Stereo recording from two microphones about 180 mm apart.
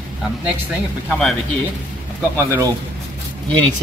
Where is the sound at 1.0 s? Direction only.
Centre (ahead or behind).